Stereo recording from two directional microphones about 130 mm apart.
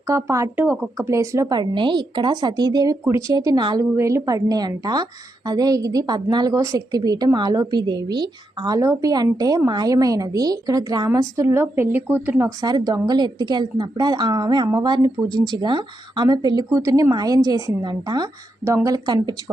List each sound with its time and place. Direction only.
0.1 s a woman's voice: 25° right (ahead or behind)
1.5 s a woman's voice: 35° right (ahead or behind)
3.9 s a woman's voice: 20° right (ahead or behind)
12.6 s a woman's voice: 30° right (ahead or behind)